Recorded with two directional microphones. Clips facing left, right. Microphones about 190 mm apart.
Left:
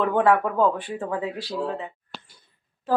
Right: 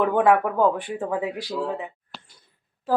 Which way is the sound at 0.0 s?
15° right (ahead or behind).